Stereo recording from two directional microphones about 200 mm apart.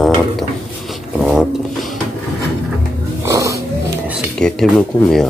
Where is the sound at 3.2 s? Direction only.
15° right (ahead or behind).